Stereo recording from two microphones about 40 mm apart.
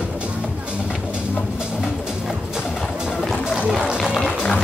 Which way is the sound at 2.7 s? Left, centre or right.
Centre.